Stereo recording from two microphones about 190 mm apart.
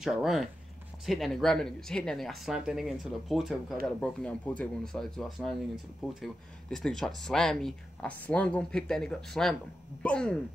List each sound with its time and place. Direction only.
0.0 s speech: centre (ahead or behind)